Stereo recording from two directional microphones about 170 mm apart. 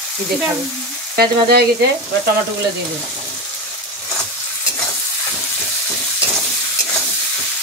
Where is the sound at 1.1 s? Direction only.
70° right (ahead or behind).